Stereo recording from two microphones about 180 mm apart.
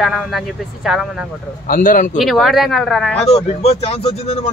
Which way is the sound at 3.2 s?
35° left (ahead or behind).